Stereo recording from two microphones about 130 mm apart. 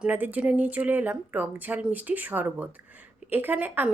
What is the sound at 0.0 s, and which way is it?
A woman's voice, 15° right (ahead or behind).